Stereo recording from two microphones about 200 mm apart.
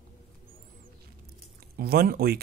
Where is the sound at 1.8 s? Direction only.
50° right (ahead or behind).